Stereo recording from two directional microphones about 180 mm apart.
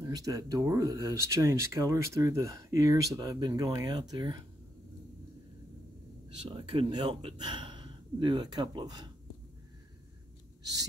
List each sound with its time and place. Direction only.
0.0 s speech: 20° right (ahead or behind)
6.5 s speech: 30° right (ahead or behind)
10.6 s a sound: 20° right (ahead or behind)